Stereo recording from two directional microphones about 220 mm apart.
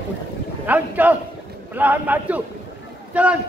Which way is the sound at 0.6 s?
5° right (ahead or behind).